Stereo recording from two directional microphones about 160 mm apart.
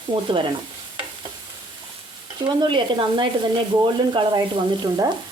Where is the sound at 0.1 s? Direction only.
30° right (ahead or behind).